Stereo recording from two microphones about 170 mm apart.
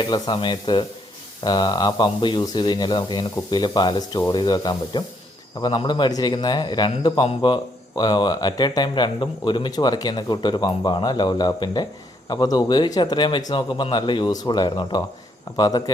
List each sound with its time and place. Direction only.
0.0 s a man's voice: 25° left (ahead or behind)